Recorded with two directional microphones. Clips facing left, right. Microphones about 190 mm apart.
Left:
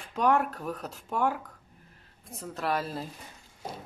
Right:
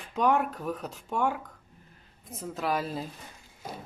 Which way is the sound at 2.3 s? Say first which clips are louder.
Right 1 dB; centre (ahead or behind).